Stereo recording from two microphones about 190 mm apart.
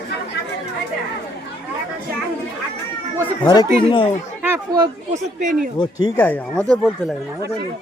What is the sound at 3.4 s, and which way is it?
Speech, 25° left (ahead or behind).